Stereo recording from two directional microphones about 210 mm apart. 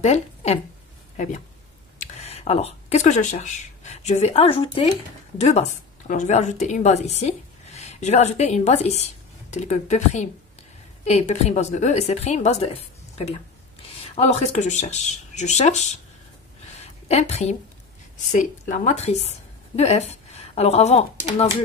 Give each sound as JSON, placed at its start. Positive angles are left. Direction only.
{"t": 0.0, "sound": "a woman's voice", "side_deg": 30}